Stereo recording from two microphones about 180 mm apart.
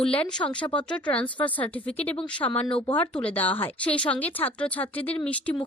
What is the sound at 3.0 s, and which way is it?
Speech, 10° left (ahead or behind).